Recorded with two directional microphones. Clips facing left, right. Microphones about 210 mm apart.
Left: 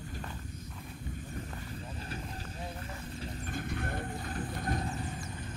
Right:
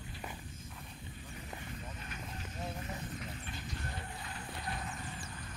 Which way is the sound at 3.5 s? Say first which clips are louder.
Left 8 dB; 55° left (ahead or behind).